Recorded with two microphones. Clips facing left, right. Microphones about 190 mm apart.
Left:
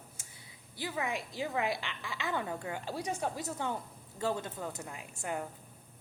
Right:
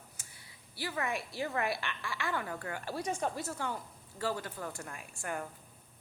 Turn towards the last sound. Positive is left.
turn(degrees=20)  # may be behind; listen again after turning